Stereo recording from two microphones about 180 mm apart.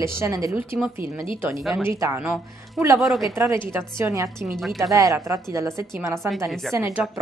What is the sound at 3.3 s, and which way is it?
Speech, 15° right (ahead or behind).